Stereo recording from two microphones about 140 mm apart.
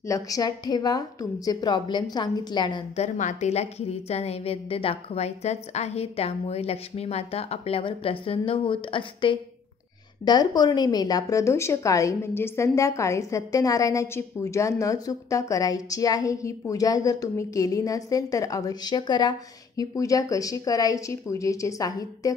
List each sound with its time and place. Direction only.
0.1 s a woman's voice: 25° left (ahead or behind)
3.0 s a woman's voice: 55° left (ahead or behind); by 22.3 s 25° left (ahead or behind)